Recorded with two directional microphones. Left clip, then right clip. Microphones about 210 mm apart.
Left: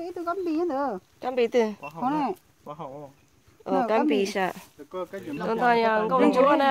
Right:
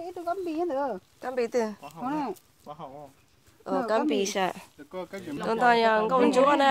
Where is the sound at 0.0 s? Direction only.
50° left (ahead or behind).